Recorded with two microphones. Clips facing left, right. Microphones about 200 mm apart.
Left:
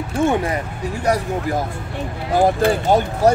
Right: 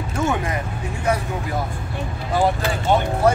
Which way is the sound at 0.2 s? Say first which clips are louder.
Left 4 dB; 30° left (ahead or behind).